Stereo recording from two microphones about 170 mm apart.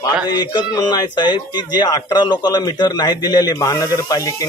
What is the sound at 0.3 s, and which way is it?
Speech, 25° left (ahead or behind).